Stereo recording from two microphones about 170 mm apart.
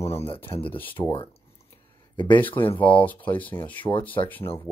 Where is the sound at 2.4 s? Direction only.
30° left (ahead or behind).